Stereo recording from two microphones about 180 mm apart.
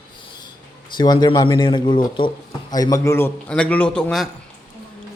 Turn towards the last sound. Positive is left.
turn(degrees=5)  # may be behind; listen again after turning